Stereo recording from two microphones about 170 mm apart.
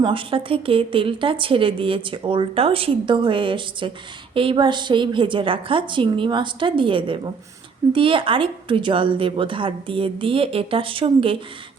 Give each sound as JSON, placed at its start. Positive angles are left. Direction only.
{"t": 0.0, "sound": "a woman's voice", "side_deg": -30}